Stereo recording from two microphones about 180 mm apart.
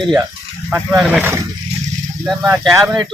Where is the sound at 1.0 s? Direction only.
5° right (ahead or behind).